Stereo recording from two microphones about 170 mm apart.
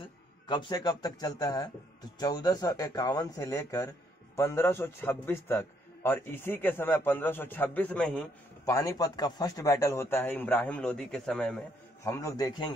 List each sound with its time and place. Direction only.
0.0 s a man's voice: 25° left (ahead or behind); by 8.3 s 5° left (ahead or behind)
8.6 s a man's voice: 20° left (ahead or behind); by 11.6 s 5° left (ahead or behind)
12.0 s a man's voice: 20° left (ahead or behind)